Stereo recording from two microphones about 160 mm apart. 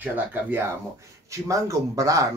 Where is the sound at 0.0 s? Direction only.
10° right (ahead or behind).